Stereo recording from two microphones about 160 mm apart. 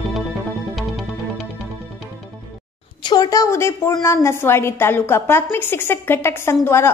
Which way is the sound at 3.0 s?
25° left (ahead or behind).